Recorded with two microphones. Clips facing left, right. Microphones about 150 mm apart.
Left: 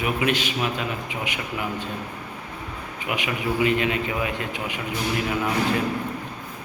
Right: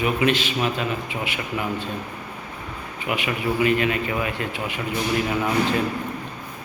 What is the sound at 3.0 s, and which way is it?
A man's voice, 15° left (ahead or behind).